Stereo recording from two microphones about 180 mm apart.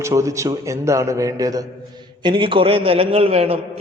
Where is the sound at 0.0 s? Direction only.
15° right (ahead or behind).